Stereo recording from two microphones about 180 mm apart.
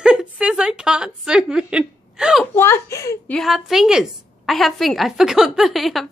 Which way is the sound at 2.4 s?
15° left (ahead or behind).